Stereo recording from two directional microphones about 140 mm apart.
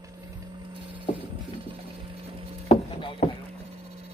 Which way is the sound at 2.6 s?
40° left (ahead or behind).